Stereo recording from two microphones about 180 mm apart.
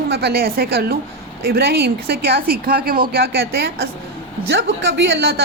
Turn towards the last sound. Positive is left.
turn(degrees=-65)  # may be behind; listen again after turning